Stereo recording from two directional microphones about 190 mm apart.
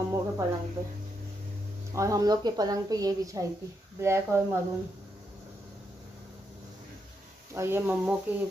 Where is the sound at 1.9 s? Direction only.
15° right (ahead or behind).